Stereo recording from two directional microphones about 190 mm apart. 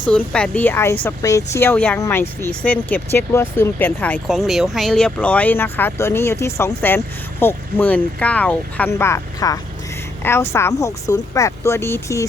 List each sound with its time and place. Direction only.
0.3 s speech: 5° left (ahead or behind)